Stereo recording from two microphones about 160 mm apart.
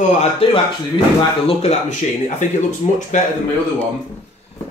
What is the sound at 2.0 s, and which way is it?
Speech, 50° left (ahead or behind).